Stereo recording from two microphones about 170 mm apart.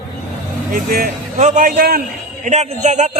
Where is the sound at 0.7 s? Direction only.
55° right (ahead or behind).